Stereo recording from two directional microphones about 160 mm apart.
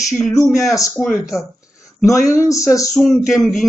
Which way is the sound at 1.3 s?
20° left (ahead or behind).